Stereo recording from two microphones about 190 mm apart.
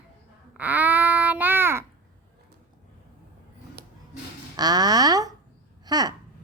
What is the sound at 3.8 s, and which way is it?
Music, 55° right (ahead or behind).